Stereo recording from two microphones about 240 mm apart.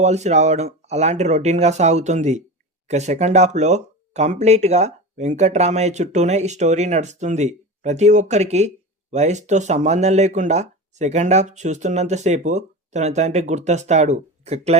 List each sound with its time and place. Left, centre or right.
0.0 s speech: right